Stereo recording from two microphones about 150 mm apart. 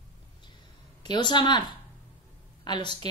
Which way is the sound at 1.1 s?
30° left (ahead or behind).